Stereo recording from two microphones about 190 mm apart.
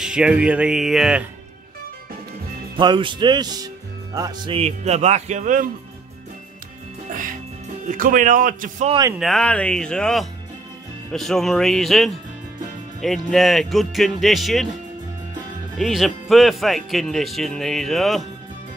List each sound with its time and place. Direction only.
0.0 s speech: 5° right (ahead or behind)
2.8 s speech: 25° right (ahead or behind); by 5.7 s 45° right (ahead or behind)
7.1 s music: 45° right (ahead or behind)
7.8 s a man's voice: 45° right (ahead or behind)
9.2 s speech: 5° left (ahead or behind)
15.8 s speech: centre (ahead or behind)